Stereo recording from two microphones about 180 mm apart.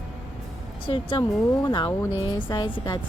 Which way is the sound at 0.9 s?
30° left (ahead or behind).